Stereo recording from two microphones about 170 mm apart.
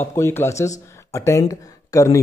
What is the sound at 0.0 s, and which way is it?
A man's voice, 15° left (ahead or behind).